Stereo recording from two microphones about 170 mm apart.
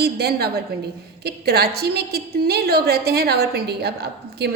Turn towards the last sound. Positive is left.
turn(degrees=-80)